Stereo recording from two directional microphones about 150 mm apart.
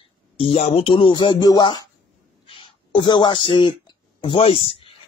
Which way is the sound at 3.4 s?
35° left (ahead or behind).